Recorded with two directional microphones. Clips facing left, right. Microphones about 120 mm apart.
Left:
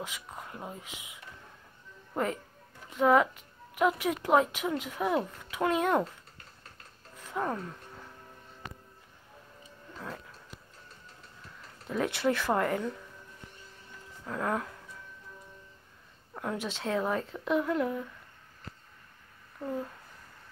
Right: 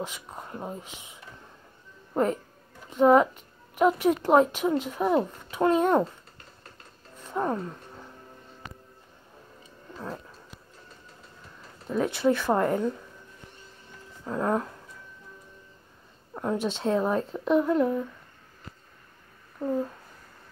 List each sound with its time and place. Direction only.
0.0 s speech: 30° right (ahead or behind)
2.9 s a woman's voice: 30° right (ahead or behind)
7.2 s a sound: 30° right (ahead or behind)
11.9 s speech: 15° right (ahead or behind)
14.2 s speech: 25° right (ahead or behind)
16.6 s speech: 25° right (ahead or behind)
19.6 s speech: 15° right (ahead or behind)